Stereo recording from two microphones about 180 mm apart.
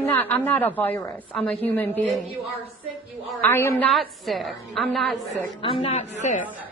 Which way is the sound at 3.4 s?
15° left (ahead or behind).